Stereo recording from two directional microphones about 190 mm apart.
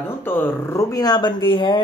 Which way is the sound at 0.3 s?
15° left (ahead or behind).